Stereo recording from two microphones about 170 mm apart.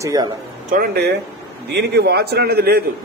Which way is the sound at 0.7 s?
65° right (ahead or behind).